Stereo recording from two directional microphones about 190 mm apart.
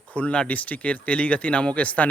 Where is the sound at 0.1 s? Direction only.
5° left (ahead or behind).